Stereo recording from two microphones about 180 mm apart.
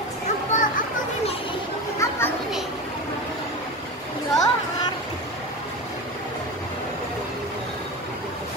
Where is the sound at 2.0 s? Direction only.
15° left (ahead or behind).